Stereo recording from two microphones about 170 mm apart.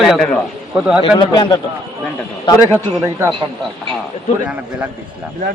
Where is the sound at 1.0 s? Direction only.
25° left (ahead or behind).